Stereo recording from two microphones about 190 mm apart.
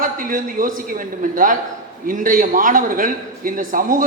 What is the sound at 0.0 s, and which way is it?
A man's voice, 45° right (ahead or behind).